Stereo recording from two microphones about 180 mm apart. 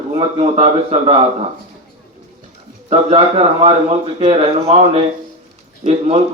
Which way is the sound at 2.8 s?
35° right (ahead or behind).